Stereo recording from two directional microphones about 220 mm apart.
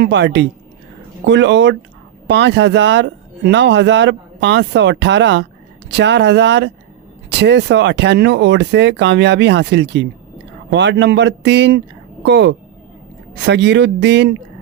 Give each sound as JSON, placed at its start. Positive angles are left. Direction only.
{"t": 0.0, "sound": "speech", "side_deg": -50}